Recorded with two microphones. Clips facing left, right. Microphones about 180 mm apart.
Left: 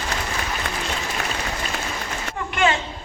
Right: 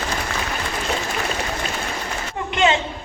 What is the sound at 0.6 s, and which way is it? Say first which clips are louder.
Applause: right 1 dB; 65° left (ahead or behind).